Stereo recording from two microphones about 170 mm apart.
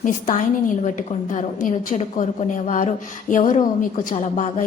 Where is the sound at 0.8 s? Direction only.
45° left (ahead or behind).